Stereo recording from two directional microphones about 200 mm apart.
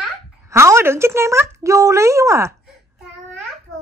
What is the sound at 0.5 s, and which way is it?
Speech, 15° right (ahead or behind).